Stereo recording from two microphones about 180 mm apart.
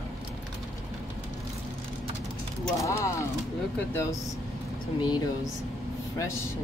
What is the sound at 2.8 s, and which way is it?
Speech, 15° left (ahead or behind).